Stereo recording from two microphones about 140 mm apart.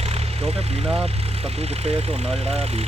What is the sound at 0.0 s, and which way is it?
Speech, 45° right (ahead or behind).